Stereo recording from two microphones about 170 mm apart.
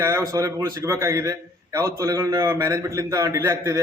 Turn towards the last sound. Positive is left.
turn(degrees=-15)  # may be behind; listen again after turning